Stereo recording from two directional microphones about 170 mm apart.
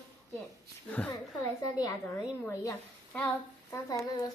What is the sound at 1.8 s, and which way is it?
Speech, 20° left (ahead or behind).